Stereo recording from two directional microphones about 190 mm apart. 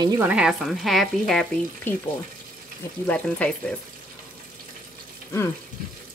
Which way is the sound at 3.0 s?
5° left (ahead or behind).